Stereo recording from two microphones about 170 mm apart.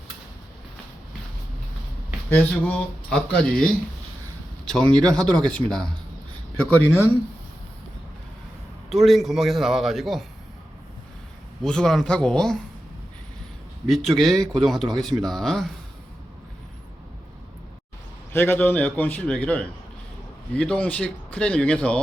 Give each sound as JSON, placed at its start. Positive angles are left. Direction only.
{"t": 2.3, "sound": "a man's voice", "side_deg": 10}
{"t": 8.9, "sound": "a man's voice", "side_deg": 0}
{"t": 11.6, "sound": "a man's voice", "side_deg": 5}
{"t": 13.9, "sound": "a man's voice", "side_deg": 0}
{"t": 18.3, "sound": "a man's voice", "side_deg": 15}